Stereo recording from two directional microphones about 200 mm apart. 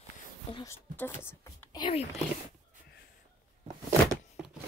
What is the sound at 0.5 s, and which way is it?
Speech, 25° left (ahead or behind).